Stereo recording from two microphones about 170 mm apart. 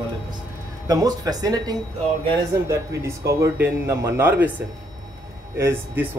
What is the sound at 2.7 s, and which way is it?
Speech, 20° right (ahead or behind).